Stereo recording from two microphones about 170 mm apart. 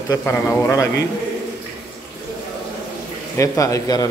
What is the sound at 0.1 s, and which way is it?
Speech, 15° left (ahead or behind).